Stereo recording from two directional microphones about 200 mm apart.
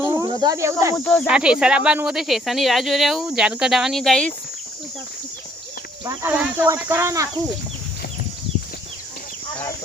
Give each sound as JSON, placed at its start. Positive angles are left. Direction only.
{"t": 0.0, "sound": "cricket", "side_deg": -10}
{"t": 0.3, "sound": "speech", "side_deg": -20}
{"t": 0.9, "sound": "speech", "side_deg": 5}
{"t": 1.3, "sound": "speech", "side_deg": -5}
{"t": 6.1, "sound": "speech", "side_deg": -10}